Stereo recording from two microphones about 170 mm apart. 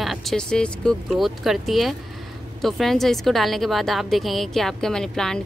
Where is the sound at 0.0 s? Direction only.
Centre (ahead or behind).